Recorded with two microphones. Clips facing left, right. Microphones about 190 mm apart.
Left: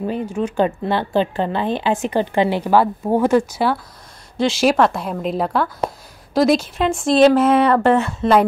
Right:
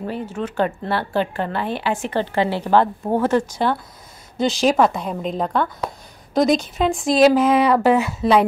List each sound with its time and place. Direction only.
0.0 s speech: 15° left (ahead or behind); by 8.5 s 5° right (ahead or behind)